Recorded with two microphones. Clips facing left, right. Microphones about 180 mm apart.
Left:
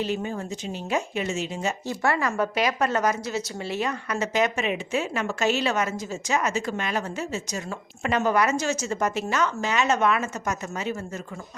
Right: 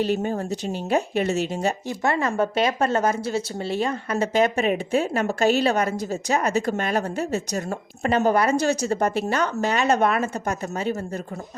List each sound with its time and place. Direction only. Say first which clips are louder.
0.2 s speech: right 5 dB; 45° right (ahead or behind)
1.1 s speech: right 5 dB; 60° right (ahead or behind)
1.9 s a woman's voice: right 2 dB; 25° right (ahead or behind)